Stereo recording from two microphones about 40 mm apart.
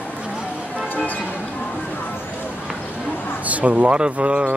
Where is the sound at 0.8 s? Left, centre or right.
Left.